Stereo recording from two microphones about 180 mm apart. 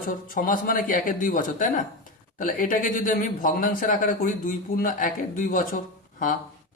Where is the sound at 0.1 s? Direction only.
50° left (ahead or behind).